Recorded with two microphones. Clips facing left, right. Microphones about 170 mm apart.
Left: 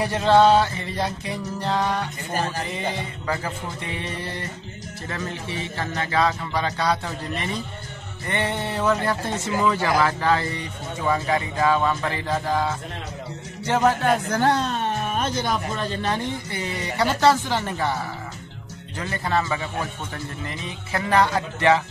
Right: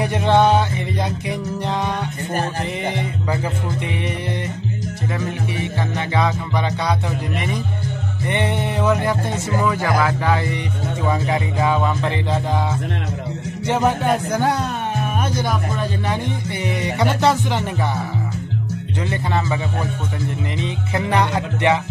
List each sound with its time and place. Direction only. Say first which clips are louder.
0.0 s music: right 1 dB; 20° right (ahead or behind)
2.8 s speech: right 5 dB; 20° right (ahead or behind)
5.1 s music: right 3 dB; 15° right (ahead or behind)
13.7 s music: right 1 dB; 15° right (ahead or behind)
19.0 s music: right 1 dB; 20° right (ahead or behind)